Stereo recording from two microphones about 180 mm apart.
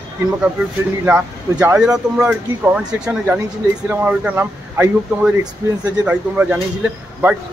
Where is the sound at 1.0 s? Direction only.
10° right (ahead or behind).